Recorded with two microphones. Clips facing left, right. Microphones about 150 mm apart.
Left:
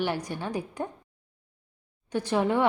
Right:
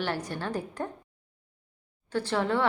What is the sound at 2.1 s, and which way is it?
Speech, 15° left (ahead or behind).